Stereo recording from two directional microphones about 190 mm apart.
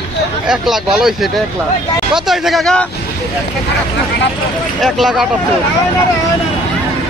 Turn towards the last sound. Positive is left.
turn(degrees=0)  # may be behind; listen again after turning